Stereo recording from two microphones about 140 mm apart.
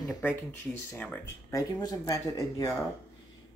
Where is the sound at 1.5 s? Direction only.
25° left (ahead or behind).